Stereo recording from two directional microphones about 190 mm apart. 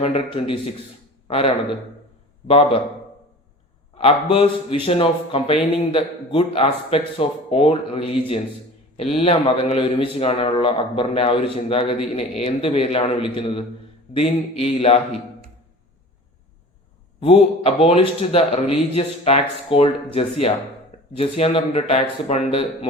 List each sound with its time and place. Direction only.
0.0 s a man's voice: 30° left (ahead or behind)
3.9 s a man's voice: 30° left (ahead or behind)
17.2 s speech: 30° left (ahead or behind)
21.2 s a man's voice: 30° left (ahead or behind)